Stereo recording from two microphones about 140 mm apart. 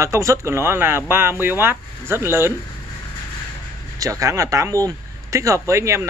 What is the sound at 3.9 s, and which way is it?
Speech, 25° right (ahead or behind).